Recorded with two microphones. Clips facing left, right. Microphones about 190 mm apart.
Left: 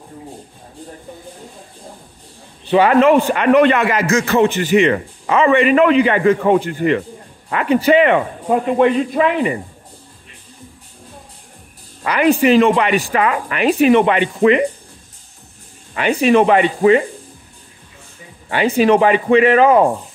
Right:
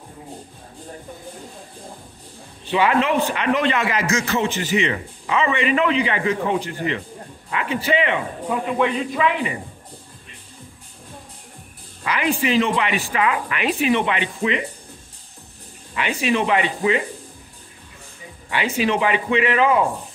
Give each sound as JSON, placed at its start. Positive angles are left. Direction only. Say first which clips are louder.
{"t": 2.7, "sound": "a man's voice", "louder": "left 8 dB", "side_deg": 45}
{"t": 12.0, "sound": "a man's voice", "louder": "left 8 dB", "side_deg": 45}
{"t": 15.9, "sound": "a man's voice", "louder": "left 8 dB", "side_deg": 45}
{"t": 18.5, "sound": "a man's voice", "louder": "left 8 dB", "side_deg": 45}